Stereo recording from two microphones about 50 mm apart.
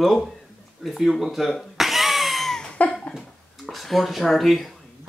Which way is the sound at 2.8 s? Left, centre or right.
Left.